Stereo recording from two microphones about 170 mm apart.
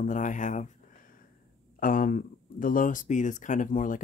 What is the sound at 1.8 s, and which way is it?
Speech, 55° left (ahead or behind).